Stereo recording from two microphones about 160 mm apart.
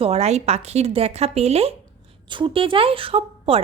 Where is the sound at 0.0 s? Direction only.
40° right (ahead or behind).